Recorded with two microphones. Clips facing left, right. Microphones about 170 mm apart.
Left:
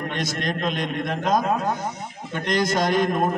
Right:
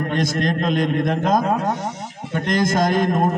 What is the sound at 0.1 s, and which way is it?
A man's voice, 50° right (ahead or behind).